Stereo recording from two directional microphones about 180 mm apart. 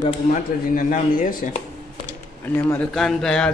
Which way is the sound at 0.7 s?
50° left (ahead or behind).